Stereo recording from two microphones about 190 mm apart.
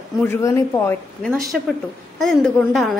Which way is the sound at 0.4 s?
15° left (ahead or behind).